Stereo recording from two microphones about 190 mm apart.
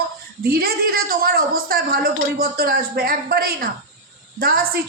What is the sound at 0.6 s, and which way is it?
A woman's voice, 55° right (ahead or behind).